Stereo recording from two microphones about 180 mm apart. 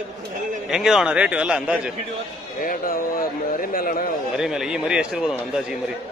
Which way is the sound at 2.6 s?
55° left (ahead or behind).